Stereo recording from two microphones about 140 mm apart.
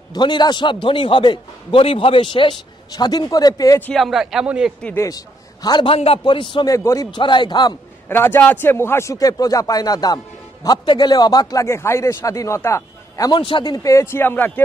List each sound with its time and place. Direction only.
0.1 s a man's voice: 30° left (ahead or behind)
3.9 s a man's voice: centre (ahead or behind)
5.0 s a man's voice: 25° left (ahead or behind)
6.7 s speech: 20° left (ahead or behind)
7.2 s a man's voice: 35° left (ahead or behind)
8.1 s speech: 15° left (ahead or behind); by 13.7 s 35° left (ahead or behind)
13.8 s speech: 20° left (ahead or behind)